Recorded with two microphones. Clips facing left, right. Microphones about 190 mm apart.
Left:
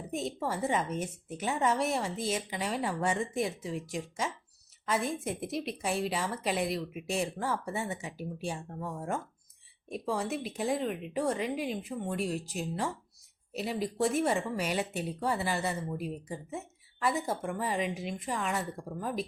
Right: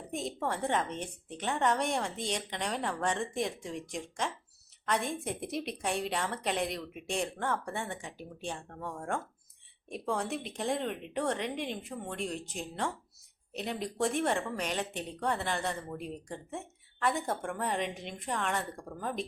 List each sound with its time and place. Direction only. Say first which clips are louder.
0.1 s speech: left 1 dB; centre (ahead or behind)